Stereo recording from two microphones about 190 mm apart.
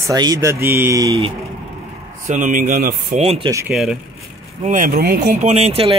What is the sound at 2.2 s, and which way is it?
Speech, 40° right (ahead or behind).